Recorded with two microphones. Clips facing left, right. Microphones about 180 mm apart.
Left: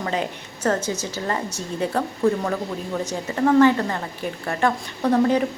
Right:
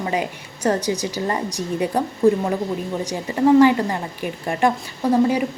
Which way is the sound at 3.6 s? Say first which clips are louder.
Right 2 dB; 10° right (ahead or behind).